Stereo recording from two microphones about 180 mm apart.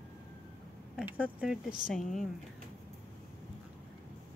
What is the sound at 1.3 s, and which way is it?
Speech, 5° right (ahead or behind).